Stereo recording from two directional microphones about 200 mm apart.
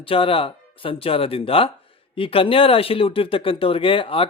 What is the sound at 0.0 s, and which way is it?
Speech, 25° left (ahead or behind).